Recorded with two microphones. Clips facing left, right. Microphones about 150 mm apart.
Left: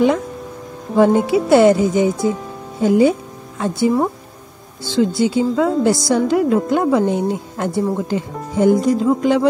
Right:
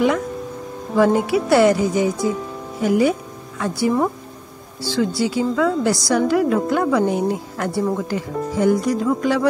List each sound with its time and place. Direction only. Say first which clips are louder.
0.9 s a woman's voice: left 3 dB; 25° left (ahead or behind)